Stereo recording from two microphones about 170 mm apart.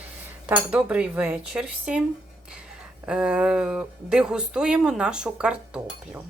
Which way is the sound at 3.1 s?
5° right (ahead or behind).